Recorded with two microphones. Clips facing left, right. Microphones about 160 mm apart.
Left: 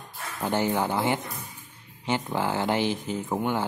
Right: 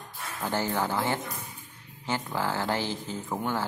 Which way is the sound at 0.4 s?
20° left (ahead or behind).